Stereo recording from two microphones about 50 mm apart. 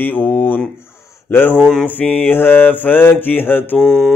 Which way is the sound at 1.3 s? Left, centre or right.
Left.